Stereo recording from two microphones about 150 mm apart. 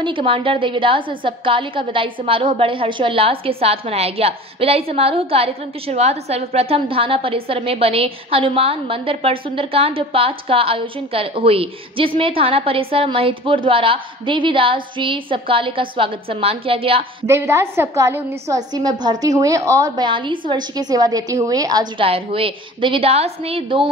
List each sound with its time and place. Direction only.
0.0 s a woman's voice: 35° right (ahead or behind)
17.3 s a woman's voice: 20° right (ahead or behind)
22.0 s a woman's voice: 40° right (ahead or behind)